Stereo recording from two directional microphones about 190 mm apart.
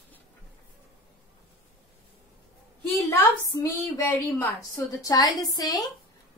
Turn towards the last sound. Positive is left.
turn(degrees=20)  # may be behind; listen again after turning